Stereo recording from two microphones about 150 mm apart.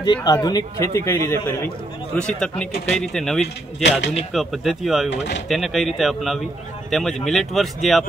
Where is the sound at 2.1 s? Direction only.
5° left (ahead or behind).